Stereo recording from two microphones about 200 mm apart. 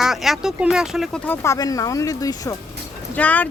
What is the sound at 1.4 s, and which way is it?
Speech, 15° left (ahead or behind).